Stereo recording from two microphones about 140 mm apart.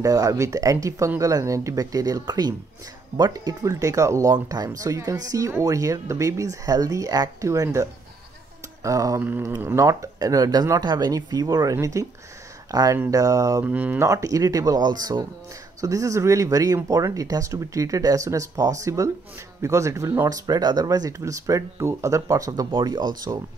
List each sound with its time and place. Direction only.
0.0 s speech: 25° right (ahead or behind)
13.7 s speech: 10° right (ahead or behind); by 23.4 s 30° right (ahead or behind)